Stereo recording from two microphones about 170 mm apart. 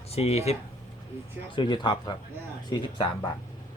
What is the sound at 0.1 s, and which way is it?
Speech, 40° left (ahead or behind).